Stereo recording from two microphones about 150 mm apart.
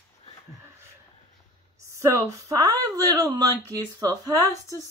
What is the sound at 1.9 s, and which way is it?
A woman's voice, 20° right (ahead or behind).